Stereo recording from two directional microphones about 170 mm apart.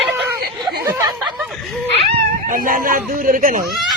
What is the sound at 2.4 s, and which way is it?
Speech, 55° right (ahead or behind).